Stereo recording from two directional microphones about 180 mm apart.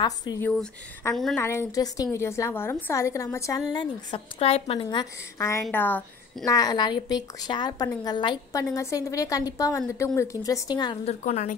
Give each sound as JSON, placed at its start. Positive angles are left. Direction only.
{"t": 0.0, "sound": "a woman's voice", "side_deg": 20}
{"t": 0.4, "sound": "a woman's voice", "side_deg": 10}
{"t": 1.4, "sound": "a woman's voice", "side_deg": 15}
{"t": 4.8, "sound": "a woman's voice", "side_deg": 15}
{"t": 6.5, "sound": "a woman's voice", "side_deg": 20}
{"t": 11.1, "sound": "a woman's voice", "side_deg": 40}